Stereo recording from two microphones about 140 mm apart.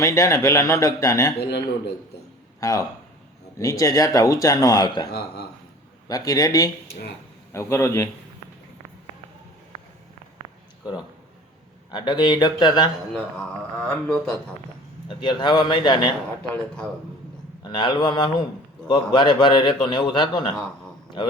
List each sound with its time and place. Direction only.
0.0 s speech: 25° left (ahead or behind)
2.6 s speech: 25° left (ahead or behind)
6.1 s speech: 25° left (ahead or behind)
11.9 s a man's voice: 30° left (ahead or behind)
13.1 s speech: 5° left (ahead or behind)
15.0 s a man's voice: 35° left (ahead or behind)
16.4 s speech: 5° left (ahead or behind)
17.6 s a man's voice: 35° left (ahead or behind)